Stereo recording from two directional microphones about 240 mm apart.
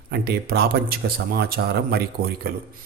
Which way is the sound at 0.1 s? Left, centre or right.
Right.